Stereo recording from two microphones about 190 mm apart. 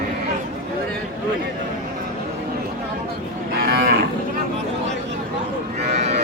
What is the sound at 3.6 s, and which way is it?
Moo, 55° right (ahead or behind).